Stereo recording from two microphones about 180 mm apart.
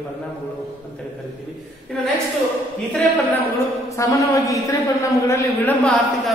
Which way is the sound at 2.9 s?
10° left (ahead or behind).